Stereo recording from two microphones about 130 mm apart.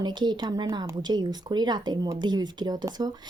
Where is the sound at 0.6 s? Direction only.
25° right (ahead or behind).